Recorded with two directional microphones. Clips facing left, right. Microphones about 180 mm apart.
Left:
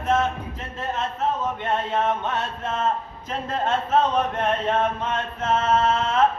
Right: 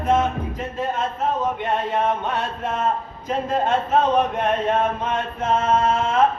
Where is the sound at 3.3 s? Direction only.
15° right (ahead or behind).